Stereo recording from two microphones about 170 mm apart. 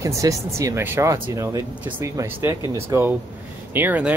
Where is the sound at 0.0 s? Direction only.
20° right (ahead or behind).